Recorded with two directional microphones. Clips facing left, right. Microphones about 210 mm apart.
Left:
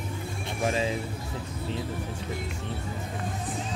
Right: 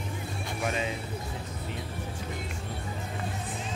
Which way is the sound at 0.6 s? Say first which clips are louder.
Left 4 dB; 30° left (ahead or behind).